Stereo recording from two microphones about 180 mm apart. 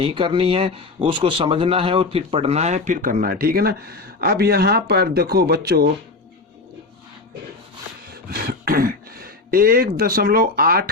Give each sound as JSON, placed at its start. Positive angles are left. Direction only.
{"t": 0.0, "sound": "a man's voice", "side_deg": -30}
{"t": 8.1, "sound": "speech", "side_deg": -55}